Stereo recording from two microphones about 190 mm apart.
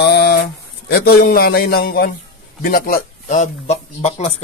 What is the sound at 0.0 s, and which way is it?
Mantra, 60° left (ahead or behind).